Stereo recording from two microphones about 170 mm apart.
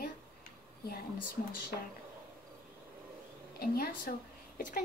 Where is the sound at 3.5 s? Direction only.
65° left (ahead or behind).